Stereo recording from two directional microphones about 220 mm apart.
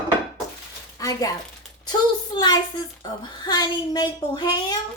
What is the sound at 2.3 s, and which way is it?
A woman's voice, 20° left (ahead or behind).